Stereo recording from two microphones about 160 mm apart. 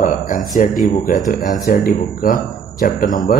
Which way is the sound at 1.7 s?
60° left (ahead or behind).